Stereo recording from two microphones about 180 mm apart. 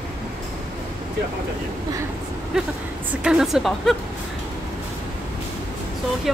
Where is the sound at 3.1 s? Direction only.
5° right (ahead or behind).